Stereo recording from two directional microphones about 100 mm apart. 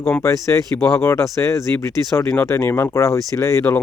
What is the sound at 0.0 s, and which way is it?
Speech, 20° left (ahead or behind).